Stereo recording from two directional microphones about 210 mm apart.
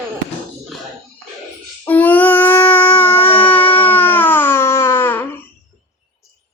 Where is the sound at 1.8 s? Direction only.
10° left (ahead or behind).